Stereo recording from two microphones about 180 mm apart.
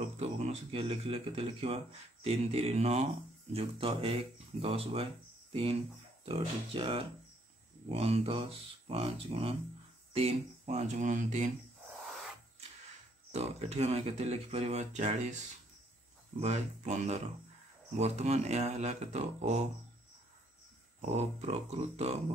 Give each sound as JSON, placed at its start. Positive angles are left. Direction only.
{"t": 0.0, "sound": "a man's voice", "side_deg": -35}
{"t": 13.3, "sound": "a man's voice", "side_deg": -35}
{"t": 16.3, "sound": "a man's voice", "side_deg": -40}
{"t": 21.0, "sound": "a man's voice", "side_deg": -35}